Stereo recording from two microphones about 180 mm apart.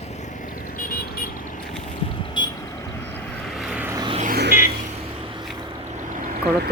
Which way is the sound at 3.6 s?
5° right (ahead or behind).